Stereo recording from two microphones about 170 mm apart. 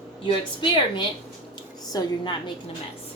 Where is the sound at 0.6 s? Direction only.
30° left (ahead or behind).